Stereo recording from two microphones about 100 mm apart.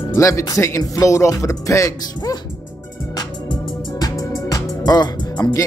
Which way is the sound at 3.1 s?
45° left (ahead or behind).